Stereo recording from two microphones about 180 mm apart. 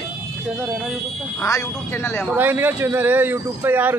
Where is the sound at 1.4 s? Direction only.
15° left (ahead or behind).